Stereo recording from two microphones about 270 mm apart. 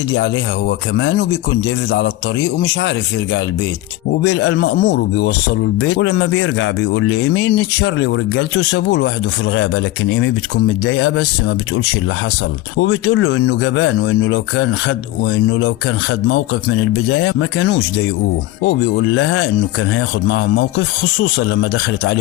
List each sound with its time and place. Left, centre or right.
0.7 s a man's voice: left
4.3 s a man's voice: left
12.8 s speech: left
17.2 s a man's voice: left